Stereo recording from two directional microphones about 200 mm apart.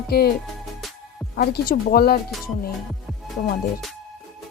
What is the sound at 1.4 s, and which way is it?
Music, 50° left (ahead or behind).